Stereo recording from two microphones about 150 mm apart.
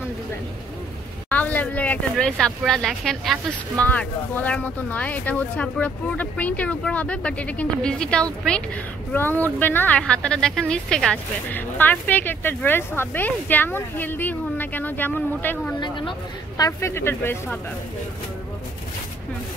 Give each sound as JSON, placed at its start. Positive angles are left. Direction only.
{"t": 1.3, "sound": "speech", "side_deg": 10}
{"t": 3.8, "sound": "speech", "side_deg": 10}
{"t": 15.8, "sound": "speech", "side_deg": 30}